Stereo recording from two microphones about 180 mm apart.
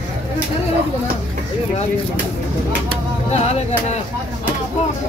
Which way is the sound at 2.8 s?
35° left (ahead or behind).